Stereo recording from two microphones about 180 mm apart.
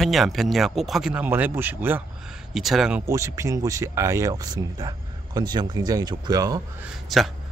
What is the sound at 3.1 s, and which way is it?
Speech, 15° right (ahead or behind).